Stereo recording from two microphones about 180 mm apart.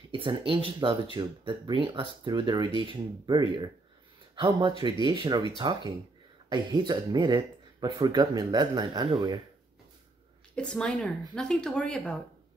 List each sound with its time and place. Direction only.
0.1 s speech: 30° right (ahead or behind)
10.5 s speech: 5° left (ahead or behind)